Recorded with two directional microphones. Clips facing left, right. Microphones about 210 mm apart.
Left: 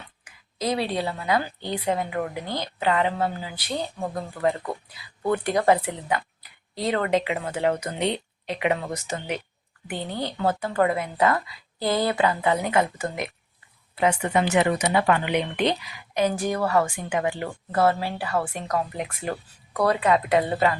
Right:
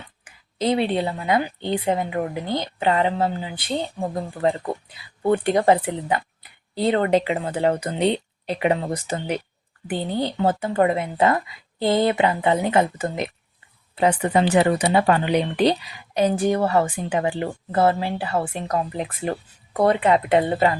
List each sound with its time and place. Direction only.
0.3 s a woman's voice: 25° right (ahead or behind)